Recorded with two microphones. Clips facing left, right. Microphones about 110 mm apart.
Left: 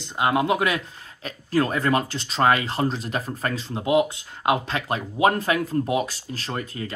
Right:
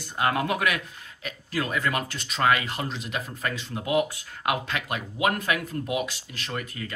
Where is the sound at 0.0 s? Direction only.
20° left (ahead or behind).